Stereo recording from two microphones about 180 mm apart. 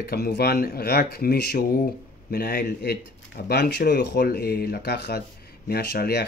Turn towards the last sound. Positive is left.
turn(degrees=65)  # may be behind; listen again after turning